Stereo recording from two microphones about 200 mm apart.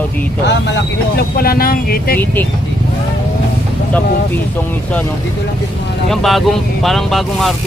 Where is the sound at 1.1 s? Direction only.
50° left (ahead or behind).